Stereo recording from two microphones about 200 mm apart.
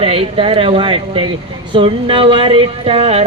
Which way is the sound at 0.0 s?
30° right (ahead or behind).